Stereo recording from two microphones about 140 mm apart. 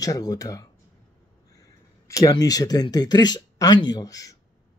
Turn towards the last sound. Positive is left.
turn(degrees=25)  # may be behind; listen again after turning